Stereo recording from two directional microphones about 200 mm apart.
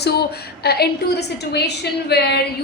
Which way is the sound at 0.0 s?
55° left (ahead or behind).